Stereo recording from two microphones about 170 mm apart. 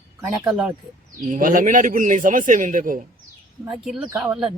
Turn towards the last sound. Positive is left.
turn(degrees=-5)  # may be behind; listen again after turning